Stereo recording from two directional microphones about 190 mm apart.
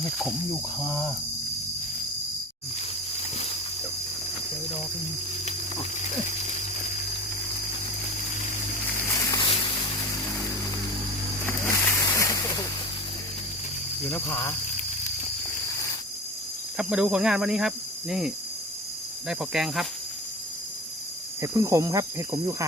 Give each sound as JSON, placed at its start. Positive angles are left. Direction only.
{"t": 0.2, "sound": "speech", "side_deg": 0}
{"t": 0.8, "sound": "speech", "side_deg": 15}
{"t": 3.3, "sound": "a sound", "side_deg": 30}
{"t": 9.3, "sound": "vehicle", "side_deg": 25}
{"t": 11.4, "sound": "boat", "side_deg": 15}
{"t": 14.1, "sound": "speech", "side_deg": 15}
{"t": 16.7, "sound": "speech", "side_deg": -5}
{"t": 21.4, "sound": "speech", "side_deg": -15}